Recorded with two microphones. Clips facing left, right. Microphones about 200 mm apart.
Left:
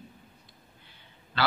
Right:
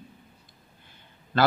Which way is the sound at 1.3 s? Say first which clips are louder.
Right 7 dB; 50° right (ahead or behind).